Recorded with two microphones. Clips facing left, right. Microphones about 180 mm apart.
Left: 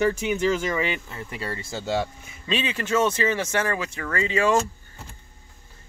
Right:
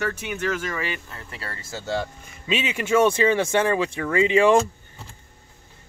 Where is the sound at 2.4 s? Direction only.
15° right (ahead or behind).